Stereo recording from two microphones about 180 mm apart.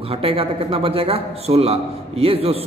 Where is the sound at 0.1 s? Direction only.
30° right (ahead or behind).